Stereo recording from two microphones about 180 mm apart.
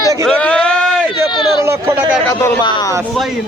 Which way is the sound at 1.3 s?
25° left (ahead or behind).